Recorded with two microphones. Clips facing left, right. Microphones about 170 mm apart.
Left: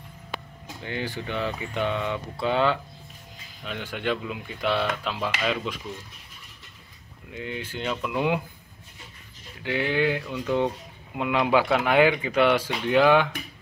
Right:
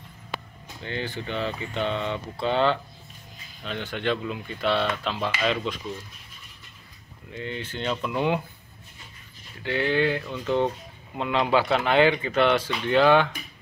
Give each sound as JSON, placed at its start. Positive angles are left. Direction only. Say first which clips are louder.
{"t": 0.8, "sound": "speech", "louder": "even", "side_deg": 10}
{"t": 2.0, "sound": "mantra", "louder": "even", "side_deg": -20}
{"t": 2.4, "sound": "speech", "louder": "even", "side_deg": 5}
{"t": 7.3, "sound": "speech", "louder": "even", "side_deg": 10}
{"t": 9.6, "sound": "speech", "louder": "right 1 dB", "side_deg": 10}